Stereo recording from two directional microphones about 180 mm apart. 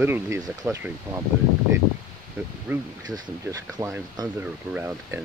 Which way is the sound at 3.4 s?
20° right (ahead or behind).